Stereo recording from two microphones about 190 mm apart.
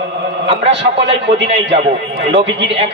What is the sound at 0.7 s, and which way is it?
A man's voice, 65° right (ahead or behind).